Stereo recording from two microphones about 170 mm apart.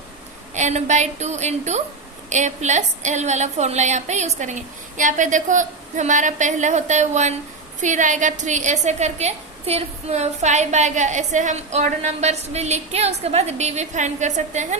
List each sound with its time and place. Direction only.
0.5 s a woman's voice: 45° right (ahead or behind)